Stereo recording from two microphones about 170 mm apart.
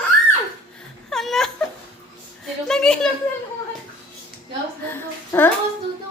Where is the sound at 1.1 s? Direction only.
Centre (ahead or behind).